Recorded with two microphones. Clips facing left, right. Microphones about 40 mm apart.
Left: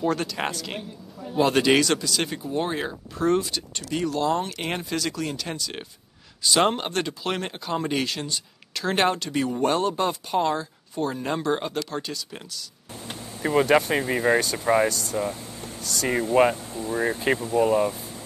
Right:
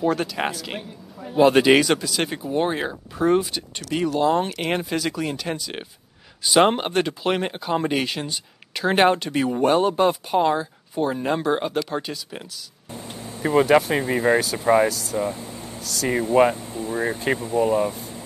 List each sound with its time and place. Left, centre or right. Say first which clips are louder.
0.0 s speech: right 3 dB; centre